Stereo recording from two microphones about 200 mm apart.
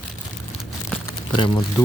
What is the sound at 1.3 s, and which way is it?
Speech, 25° left (ahead or behind).